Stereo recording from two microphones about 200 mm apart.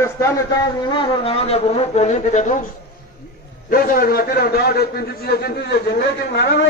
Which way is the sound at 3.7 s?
45° left (ahead or behind).